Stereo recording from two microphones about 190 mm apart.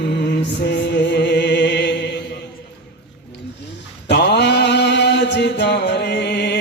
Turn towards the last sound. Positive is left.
turn(degrees=65)  # may be behind; listen again after turning